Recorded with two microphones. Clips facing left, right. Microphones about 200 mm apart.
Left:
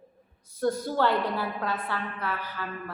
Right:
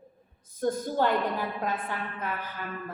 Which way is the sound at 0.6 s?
15° right (ahead or behind).